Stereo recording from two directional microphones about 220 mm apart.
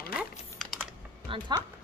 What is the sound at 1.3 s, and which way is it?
Speech, 25° right (ahead or behind).